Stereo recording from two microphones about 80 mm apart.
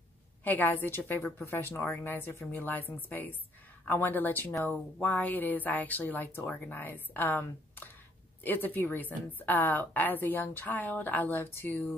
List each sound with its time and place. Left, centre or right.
0.4 s speech: left